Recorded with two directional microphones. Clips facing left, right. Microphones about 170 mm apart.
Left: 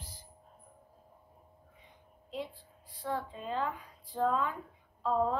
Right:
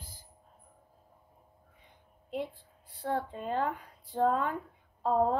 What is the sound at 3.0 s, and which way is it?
A woman's voice, 55° right (ahead or behind).